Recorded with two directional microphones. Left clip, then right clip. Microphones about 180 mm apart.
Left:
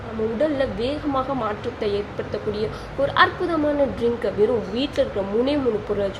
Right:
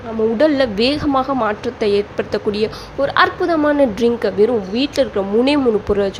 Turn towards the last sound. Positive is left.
turn(degrees=-35)  # may be behind; listen again after turning